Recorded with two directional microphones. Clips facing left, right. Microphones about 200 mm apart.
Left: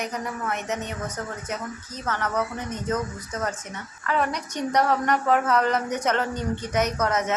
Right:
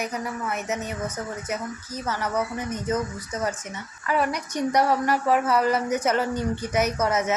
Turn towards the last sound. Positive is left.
turn(degrees=-5)  # may be behind; listen again after turning